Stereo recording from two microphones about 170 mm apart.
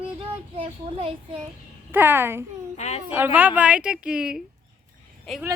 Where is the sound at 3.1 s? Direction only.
10° right (ahead or behind).